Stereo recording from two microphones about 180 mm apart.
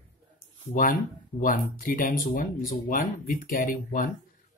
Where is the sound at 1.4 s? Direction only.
50° left (ahead or behind).